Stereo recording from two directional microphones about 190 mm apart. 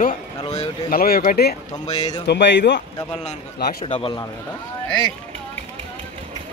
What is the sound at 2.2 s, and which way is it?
Speech, 65° left (ahead or behind).